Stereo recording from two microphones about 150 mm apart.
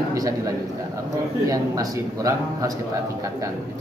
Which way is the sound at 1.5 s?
20° right (ahead or behind).